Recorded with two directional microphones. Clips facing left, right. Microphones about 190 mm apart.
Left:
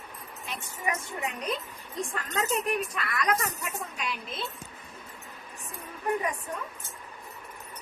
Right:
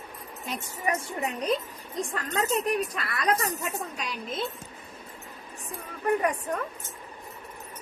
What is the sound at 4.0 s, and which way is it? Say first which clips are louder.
Speech: right 2 dB; 40° right (ahead or behind).